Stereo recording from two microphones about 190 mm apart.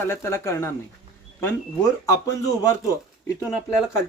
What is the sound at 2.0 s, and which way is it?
Speech, 15° left (ahead or behind).